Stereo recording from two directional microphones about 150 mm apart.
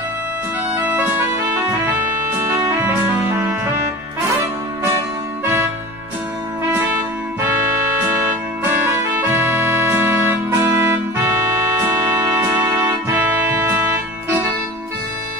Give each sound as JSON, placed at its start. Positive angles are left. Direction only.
{"t": 0.8, "sound": "music", "side_deg": -15}
{"t": 8.9, "sound": "music", "side_deg": -20}